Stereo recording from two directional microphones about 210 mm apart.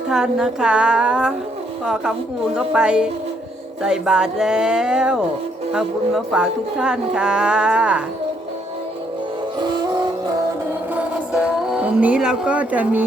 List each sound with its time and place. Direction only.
0.1 s speech: 5° right (ahead or behind)
9.6 s music: 20° right (ahead or behind)
10.9 s music: 5° right (ahead or behind)